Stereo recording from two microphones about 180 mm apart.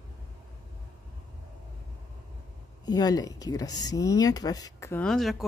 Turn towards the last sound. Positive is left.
turn(degrees=0)  # may be behind; listen again after turning